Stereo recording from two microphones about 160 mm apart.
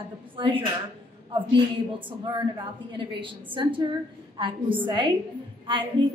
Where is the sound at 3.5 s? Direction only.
30° right (ahead or behind).